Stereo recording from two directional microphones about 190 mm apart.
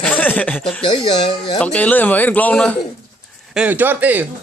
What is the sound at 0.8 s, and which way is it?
Speech, 25° left (ahead or behind).